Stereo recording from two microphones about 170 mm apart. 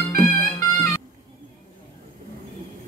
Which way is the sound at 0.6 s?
20° left (ahead or behind).